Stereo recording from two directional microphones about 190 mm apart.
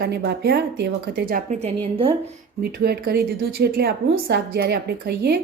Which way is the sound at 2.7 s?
55° right (ahead or behind).